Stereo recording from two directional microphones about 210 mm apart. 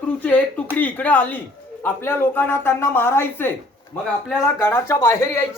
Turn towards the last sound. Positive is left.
turn(degrees=15)  # may be behind; listen again after turning